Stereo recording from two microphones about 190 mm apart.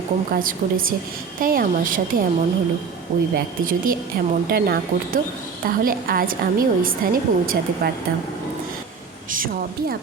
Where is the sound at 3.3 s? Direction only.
50° right (ahead or behind).